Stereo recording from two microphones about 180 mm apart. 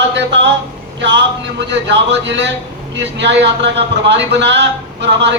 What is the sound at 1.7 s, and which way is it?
A man's voice, 80° right.